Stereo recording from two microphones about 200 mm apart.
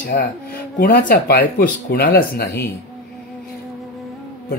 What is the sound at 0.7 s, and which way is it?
Speech, 50° left (ahead or behind).